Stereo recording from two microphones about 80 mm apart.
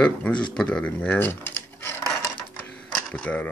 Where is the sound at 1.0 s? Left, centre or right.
Left.